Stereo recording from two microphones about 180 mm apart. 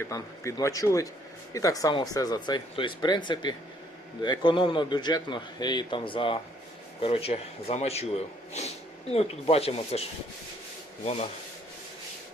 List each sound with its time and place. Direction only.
0.0 s a man's voice: 15° left (ahead or behind); by 10.0 s 35° left (ahead or behind)
11.0 s speech: 35° left (ahead or behind)